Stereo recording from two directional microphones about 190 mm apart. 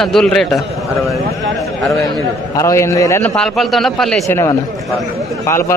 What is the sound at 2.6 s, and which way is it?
Speech, 15° left (ahead or behind).